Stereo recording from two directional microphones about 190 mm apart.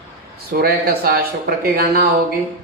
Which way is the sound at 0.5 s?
55° right (ahead or behind).